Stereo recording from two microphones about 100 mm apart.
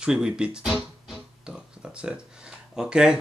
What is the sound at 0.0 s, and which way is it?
Speech, 10° right (ahead or behind).